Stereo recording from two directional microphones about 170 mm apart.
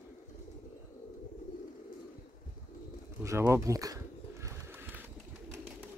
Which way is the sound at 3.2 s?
15° right (ahead or behind).